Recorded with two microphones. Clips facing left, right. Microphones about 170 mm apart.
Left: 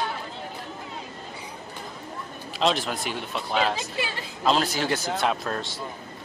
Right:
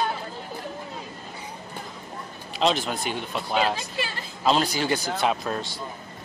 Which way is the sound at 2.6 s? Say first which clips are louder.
Right 1 dB; centre (ahead or behind).